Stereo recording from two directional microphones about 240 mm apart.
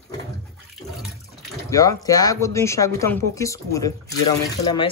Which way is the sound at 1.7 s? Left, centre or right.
Centre.